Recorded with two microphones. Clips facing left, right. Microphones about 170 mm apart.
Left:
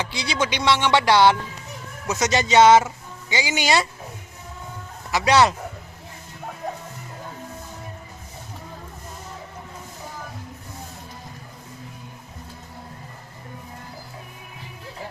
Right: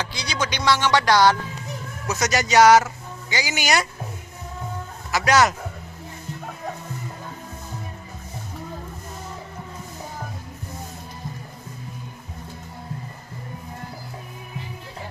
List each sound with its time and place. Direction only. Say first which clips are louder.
0.1 s speech: left 2 dB; 25° left (ahead or behind)
5.1 s speech: left 1 dB; 30° left (ahead or behind)